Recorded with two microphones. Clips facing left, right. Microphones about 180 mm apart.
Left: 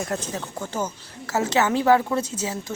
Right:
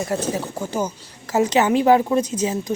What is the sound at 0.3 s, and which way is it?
A woman's voice, 10° right (ahead or behind).